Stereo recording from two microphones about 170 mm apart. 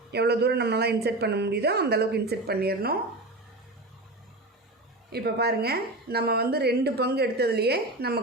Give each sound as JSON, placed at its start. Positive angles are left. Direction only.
{"t": 0.1, "sound": "a woman's voice", "side_deg": -75}
{"t": 5.1, "sound": "a woman's voice", "side_deg": -70}